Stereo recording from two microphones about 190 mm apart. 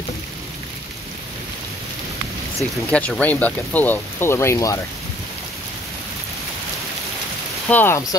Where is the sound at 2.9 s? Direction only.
5° left (ahead or behind).